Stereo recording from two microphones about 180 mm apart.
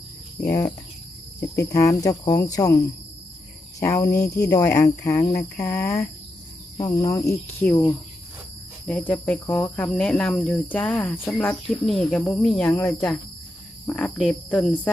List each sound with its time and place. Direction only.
1.7 s speech: 15° left (ahead or behind)
8.9 s speech: 10° left (ahead or behind)
12.6 s speech: 15° left (ahead or behind)